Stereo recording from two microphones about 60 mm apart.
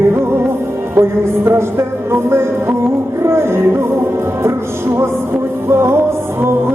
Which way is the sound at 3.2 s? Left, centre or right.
Right.